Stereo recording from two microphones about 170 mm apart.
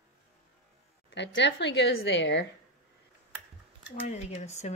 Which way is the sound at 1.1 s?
90° left.